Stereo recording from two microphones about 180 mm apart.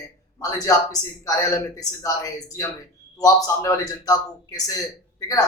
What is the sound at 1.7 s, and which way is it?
A man's voice, 20° left (ahead or behind).